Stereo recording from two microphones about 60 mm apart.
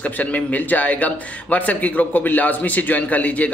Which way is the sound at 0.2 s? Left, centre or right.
Left.